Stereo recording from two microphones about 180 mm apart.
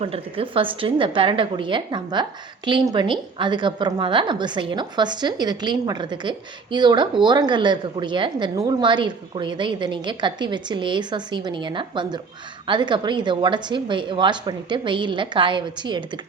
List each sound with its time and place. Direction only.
0.0 s a woman's voice: 30° right (ahead or behind)